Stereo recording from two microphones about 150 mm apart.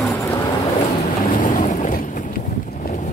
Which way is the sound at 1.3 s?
60° left (ahead or behind).